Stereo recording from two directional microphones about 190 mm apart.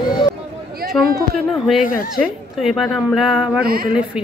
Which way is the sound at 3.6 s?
50° right (ahead or behind).